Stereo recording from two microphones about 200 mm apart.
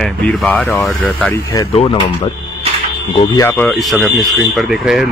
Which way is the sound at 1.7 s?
30° left (ahead or behind).